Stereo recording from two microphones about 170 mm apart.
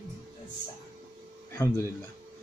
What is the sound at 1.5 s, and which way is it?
Speech, 15° left (ahead or behind).